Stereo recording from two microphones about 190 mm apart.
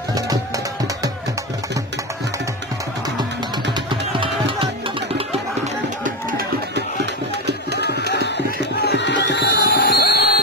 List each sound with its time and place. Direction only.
3.9 s music: 25° right (ahead or behind)
6.0 s a sound: 55° right (ahead or behind)
8.8 s music: 65° left (ahead or behind)